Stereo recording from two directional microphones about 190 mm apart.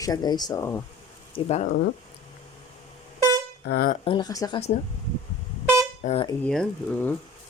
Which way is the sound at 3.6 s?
55° left (ahead or behind).